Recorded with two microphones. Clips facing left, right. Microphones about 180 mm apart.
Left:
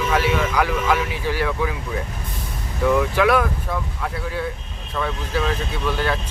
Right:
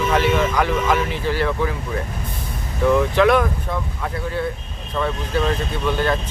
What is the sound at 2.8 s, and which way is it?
Speech, 5° left (ahead or behind).